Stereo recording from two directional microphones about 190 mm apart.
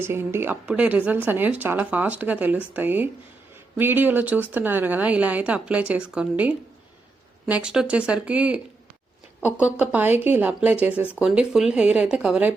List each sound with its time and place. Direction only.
0.0 s a woman's voice: 10° right (ahead or behind)
9.7 s a woman's voice: 10° right (ahead or behind)